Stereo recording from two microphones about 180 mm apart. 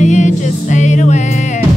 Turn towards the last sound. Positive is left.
turn(degrees=40)  # may be behind; listen again after turning